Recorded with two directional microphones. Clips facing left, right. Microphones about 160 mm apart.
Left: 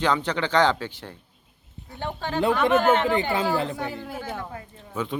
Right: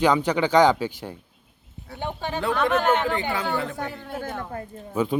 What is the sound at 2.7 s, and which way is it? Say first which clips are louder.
Speech: left 2 dB; 5° left (ahead or behind).